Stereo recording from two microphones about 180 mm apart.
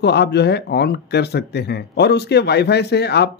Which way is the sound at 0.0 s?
65° left (ahead or behind).